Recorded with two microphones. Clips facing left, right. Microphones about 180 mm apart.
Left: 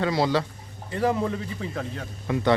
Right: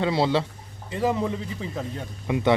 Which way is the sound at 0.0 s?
25° right (ahead or behind).